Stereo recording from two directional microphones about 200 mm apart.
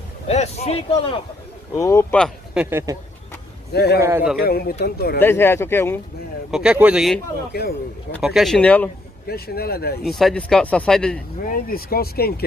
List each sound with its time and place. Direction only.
0.3 s a man's voice: 30° left (ahead or behind)
1.7 s speech: 15° left (ahead or behind); by 2.8 s 5° right (ahead or behind)
3.7 s speech: 55° left (ahead or behind)
4.0 s a man's voice: 10° right (ahead or behind)
4.4 s speech: 50° left (ahead or behind)
5.2 s speech: 10° left (ahead or behind)
6.5 s speech: 5° right (ahead or behind)
7.5 s speech: 55° left (ahead or behind)
8.2 s speech: centre (ahead or behind)
9.3 s speech: 50° left (ahead or behind)
10.0 s speech: centre (ahead or behind)
11.4 s speech: 45° left (ahead or behind)